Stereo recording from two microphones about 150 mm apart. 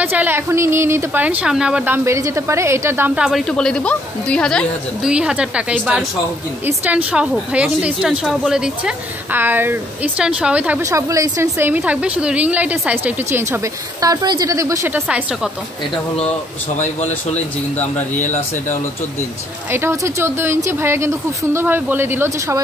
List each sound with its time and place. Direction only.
0.0 s a woman's voice: 10° right (ahead or behind)
2.0 s a woman's voice: 20° right (ahead or behind)
3.3 s a woman's voice: centre (ahead or behind)
5.1 s a woman's voice: 5° right (ahead or behind)
10.8 s a woman's voice: 20° right (ahead or behind)
15.0 s a woman's voice: 5° right (ahead or behind)
16.7 s speech: 50° left (ahead or behind)
19.7 s a woman's voice: 15° right (ahead or behind)